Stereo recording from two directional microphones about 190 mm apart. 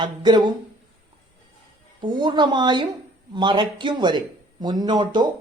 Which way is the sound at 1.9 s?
25° right (ahead or behind).